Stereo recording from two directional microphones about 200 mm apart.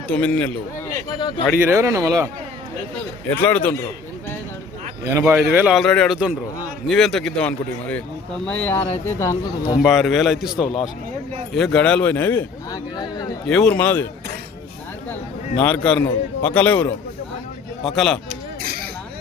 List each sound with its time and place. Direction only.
0.1 s a man's voice: 5° left (ahead or behind)
1.1 s speech: 20° left (ahead or behind)
1.5 s speech: 15° right (ahead or behind)
3.3 s a man's voice: 10° left (ahead or behind)
5.1 s a man's voice: 10° right (ahead or behind); by 9.4 s 15° left (ahead or behind)
9.8 s a man's voice: centre (ahead or behind)
13.0 s a man's voice: 20° left (ahead or behind)
13.5 s a man's voice: 5° left (ahead or behind)
15.6 s a man's voice: 5° left (ahead or behind)
18.3 s a sound: 50° right (ahead or behind)